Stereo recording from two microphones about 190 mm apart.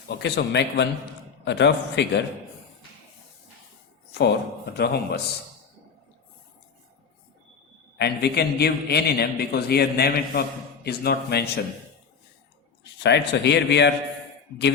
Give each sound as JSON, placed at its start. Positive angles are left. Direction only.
{"t": 0.2, "sound": "a man's voice", "side_deg": 65}
{"t": 4.1, "sound": "a man's voice", "side_deg": 65}
{"t": 7.9, "sound": "a man's voice", "side_deg": 60}
{"t": 12.8, "sound": "a man's voice", "side_deg": 65}